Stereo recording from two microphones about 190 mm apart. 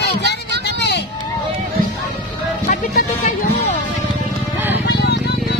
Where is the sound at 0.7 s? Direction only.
60° left (ahead or behind).